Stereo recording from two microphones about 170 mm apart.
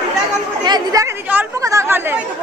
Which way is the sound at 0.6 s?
25° right (ahead or behind).